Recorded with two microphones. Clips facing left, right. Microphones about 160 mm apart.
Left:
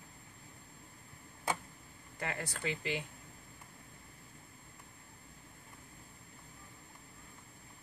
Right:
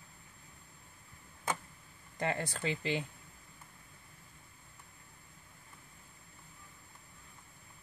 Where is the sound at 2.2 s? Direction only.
30° right (ahead or behind).